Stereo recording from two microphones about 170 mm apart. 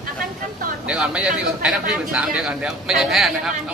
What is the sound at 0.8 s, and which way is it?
Speech, 5° right (ahead or behind).